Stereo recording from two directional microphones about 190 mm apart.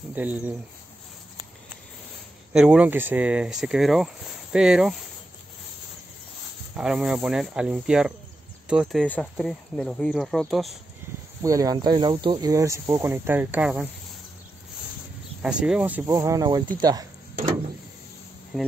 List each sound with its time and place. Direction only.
0.1 s speech: 10° right (ahead or behind)
2.5 s speech: 5° right (ahead or behind)
6.7 s speech: 5° right (ahead or behind)
11.4 s speech: 20° right (ahead or behind)
15.4 s speech: 5° right (ahead or behind); by 17.1 s 20° right (ahead or behind)